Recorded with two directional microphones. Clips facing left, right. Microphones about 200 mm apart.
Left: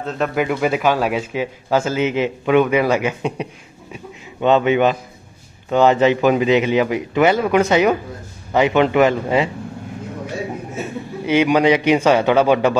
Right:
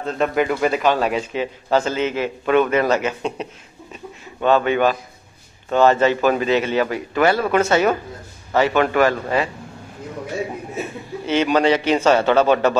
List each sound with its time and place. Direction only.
0.0 s a man's voice: centre (ahead or behind); by 9.5 s 20° left (ahead or behind)
11.2 s speech: 10° left (ahead or behind)